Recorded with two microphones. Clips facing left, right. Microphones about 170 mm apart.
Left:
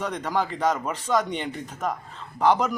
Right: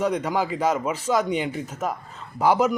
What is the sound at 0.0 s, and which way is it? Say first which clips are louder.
Speech: right 3 dB; 10° right (ahead or behind).